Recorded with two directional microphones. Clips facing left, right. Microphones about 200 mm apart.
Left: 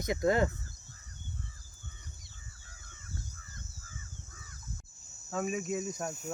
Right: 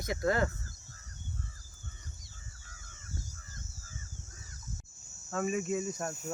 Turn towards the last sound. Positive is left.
turn(degrees=5)  # may be behind; listen again after turning